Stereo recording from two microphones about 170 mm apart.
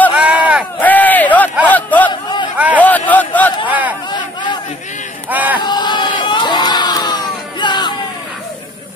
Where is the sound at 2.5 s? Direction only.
10° right (ahead or behind).